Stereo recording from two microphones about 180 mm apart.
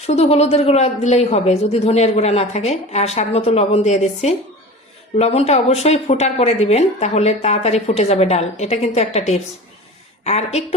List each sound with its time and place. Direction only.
0.0 s speech: 35° left (ahead or behind)